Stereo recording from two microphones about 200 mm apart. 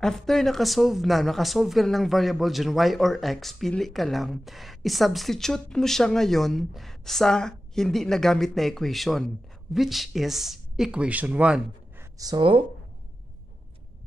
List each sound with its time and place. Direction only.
0.0 s speech: centre (ahead or behind)
12.2 s speech: 20° right (ahead or behind)